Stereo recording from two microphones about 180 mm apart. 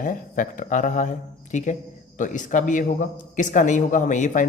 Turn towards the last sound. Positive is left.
turn(degrees=45)  # may be behind; listen again after turning